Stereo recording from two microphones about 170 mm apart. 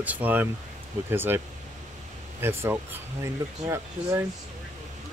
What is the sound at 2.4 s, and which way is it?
Speech, 15° right (ahead or behind).